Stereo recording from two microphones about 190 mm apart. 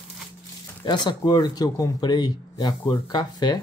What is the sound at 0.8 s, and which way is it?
Speech, 20° left (ahead or behind).